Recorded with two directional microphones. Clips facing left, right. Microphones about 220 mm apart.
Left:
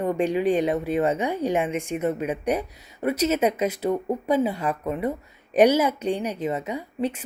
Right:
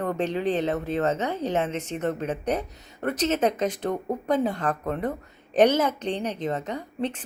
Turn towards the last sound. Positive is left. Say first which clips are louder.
# left 2 dB
turn(degrees=10)  # may be behind; listen again after turning